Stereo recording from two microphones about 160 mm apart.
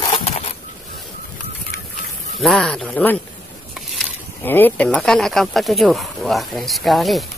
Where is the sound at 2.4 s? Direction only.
Centre (ahead or behind).